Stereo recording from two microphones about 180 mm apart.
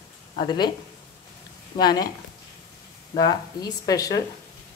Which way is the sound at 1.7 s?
20° left (ahead or behind).